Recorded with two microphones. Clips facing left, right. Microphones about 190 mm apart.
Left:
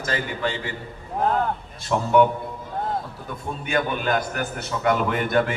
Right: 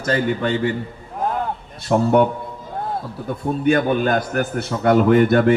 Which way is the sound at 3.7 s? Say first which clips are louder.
Right 7 dB; 50° right (ahead or behind).